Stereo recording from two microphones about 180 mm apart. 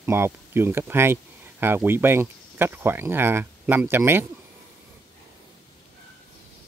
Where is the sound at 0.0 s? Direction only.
15° right (ahead or behind).